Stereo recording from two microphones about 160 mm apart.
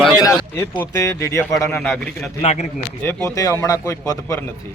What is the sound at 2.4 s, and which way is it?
Speech, 45° left (ahead or behind).